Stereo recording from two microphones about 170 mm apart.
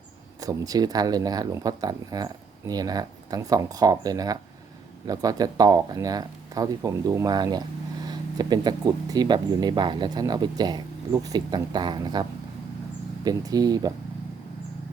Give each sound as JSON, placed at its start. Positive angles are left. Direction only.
{"t": 0.4, "sound": "speech", "side_deg": -20}
{"t": 13.2, "sound": "speech", "side_deg": -20}